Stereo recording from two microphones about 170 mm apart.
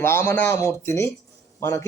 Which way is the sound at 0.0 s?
15° left (ahead or behind).